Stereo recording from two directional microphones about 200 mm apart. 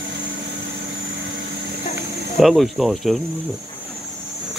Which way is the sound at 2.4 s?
Centre (ahead or behind).